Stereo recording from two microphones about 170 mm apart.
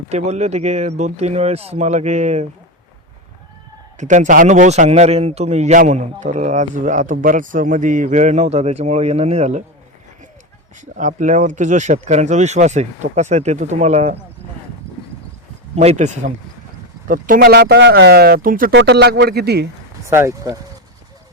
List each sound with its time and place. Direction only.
0.1 s speech: 40° right (ahead or behind)
3.9 s a man's voice: 45° right (ahead or behind)
10.8 s a man's voice: 50° right (ahead or behind)
15.7 s speech: 40° right (ahead or behind)
17.1 s speech: 50° right (ahead or behind)
18.7 s speech: 85° right; by 19.6 s 70° right (ahead or behind)
20.1 s speech: 15° right (ahead or behind)